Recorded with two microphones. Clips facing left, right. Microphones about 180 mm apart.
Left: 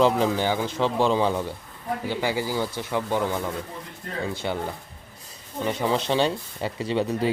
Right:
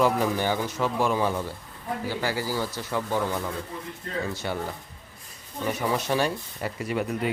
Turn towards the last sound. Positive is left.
turn(degrees=30)  # may be behind; listen again after turning